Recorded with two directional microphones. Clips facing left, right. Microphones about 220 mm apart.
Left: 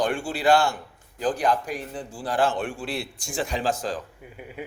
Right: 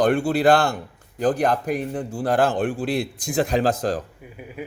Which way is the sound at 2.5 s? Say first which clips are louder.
Right 7 dB; 35° right (ahead or behind).